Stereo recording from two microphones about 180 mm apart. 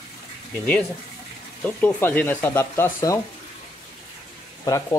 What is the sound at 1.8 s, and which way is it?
Speech, 10° left (ahead or behind).